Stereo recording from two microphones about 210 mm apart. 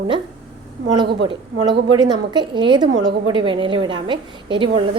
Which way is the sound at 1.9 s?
20° right (ahead or behind).